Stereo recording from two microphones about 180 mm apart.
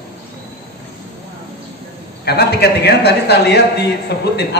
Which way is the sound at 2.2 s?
65° left (ahead or behind).